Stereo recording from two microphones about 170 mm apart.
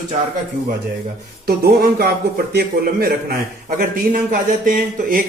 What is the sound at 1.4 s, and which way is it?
A man's voice, 65° right (ahead or behind).